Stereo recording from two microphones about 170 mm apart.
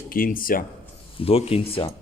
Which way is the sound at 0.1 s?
55° left (ahead or behind).